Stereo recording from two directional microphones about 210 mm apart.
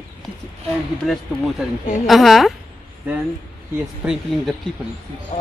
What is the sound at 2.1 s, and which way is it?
Speech, centre (ahead or behind).